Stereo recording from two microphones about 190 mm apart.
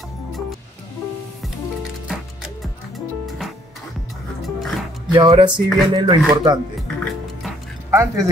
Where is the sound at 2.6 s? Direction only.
Centre (ahead or behind).